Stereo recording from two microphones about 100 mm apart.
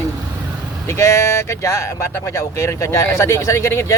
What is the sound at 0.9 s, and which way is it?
Speech, 30° left (ahead or behind).